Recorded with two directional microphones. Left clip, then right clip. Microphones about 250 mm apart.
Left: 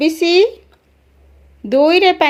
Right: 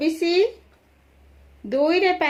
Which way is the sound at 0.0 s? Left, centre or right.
Left.